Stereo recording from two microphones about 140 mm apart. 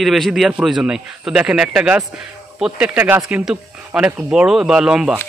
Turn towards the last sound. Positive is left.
turn(degrees=-5)  # may be behind; listen again after turning